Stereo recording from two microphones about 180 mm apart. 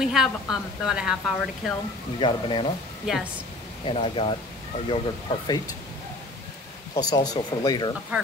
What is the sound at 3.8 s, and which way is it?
Speech, 30° left (ahead or behind).